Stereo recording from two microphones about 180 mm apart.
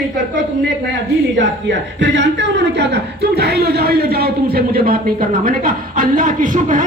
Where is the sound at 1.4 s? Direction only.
80° right.